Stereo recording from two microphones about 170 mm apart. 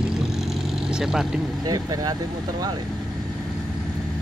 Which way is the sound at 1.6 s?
25° right (ahead or behind).